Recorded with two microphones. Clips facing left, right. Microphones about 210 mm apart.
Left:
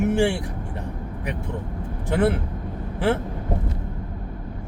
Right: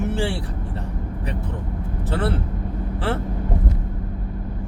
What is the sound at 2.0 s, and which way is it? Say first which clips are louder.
Speech: left 4 dB; 15° left (ahead or behind).